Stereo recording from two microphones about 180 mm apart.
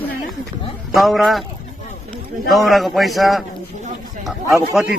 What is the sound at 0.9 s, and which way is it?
Speech, centre (ahead or behind).